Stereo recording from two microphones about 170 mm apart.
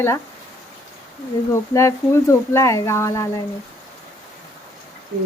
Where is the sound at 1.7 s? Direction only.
15° left (ahead or behind).